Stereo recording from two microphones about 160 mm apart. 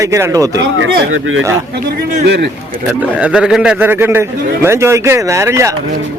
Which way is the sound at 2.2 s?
90° right.